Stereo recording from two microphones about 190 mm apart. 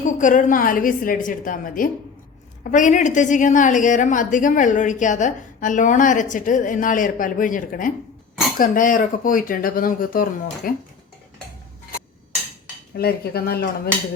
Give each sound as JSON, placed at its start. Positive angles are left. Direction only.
{"t": 0.0, "sound": "a woman's voice", "side_deg": 40}
{"t": 13.0, "sound": "speech", "side_deg": 55}